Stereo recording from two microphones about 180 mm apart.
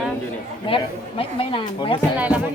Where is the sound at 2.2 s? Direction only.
10° right (ahead or behind).